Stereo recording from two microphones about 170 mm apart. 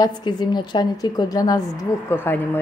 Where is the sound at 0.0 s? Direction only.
25° left (ahead or behind).